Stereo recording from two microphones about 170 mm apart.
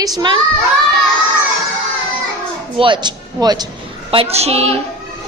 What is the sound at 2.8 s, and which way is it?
Speech, 25° right (ahead or behind).